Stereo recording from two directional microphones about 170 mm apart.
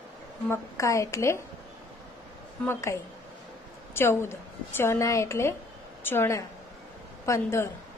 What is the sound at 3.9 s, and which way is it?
A woman's voice, 15° left (ahead or behind).